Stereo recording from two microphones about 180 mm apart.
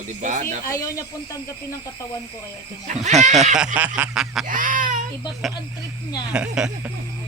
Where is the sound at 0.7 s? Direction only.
15° left (ahead or behind).